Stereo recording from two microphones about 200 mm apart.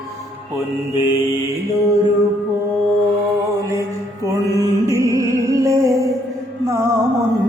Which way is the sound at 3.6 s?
15° right (ahead or behind).